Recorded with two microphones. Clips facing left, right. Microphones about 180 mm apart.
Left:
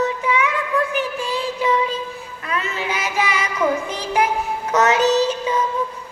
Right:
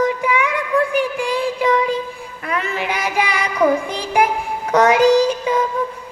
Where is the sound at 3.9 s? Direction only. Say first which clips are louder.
Right 2 dB; 15° right (ahead or behind).